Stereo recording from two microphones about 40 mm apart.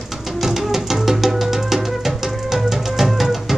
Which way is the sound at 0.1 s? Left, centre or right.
Centre.